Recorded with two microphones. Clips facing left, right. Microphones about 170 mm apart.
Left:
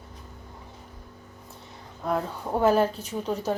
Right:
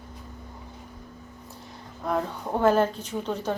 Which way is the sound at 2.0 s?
5° left (ahead or behind).